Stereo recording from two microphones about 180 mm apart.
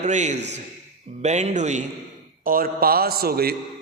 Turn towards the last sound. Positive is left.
turn(degrees=-55)  # may be behind; listen again after turning